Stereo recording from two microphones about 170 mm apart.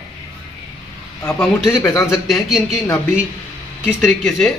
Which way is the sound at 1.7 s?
15° left (ahead or behind).